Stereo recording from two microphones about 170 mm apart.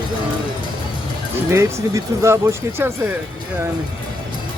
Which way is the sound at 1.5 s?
15° right (ahead or behind).